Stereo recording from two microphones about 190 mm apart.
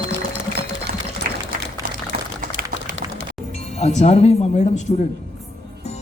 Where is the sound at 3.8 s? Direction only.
35° left (ahead or behind).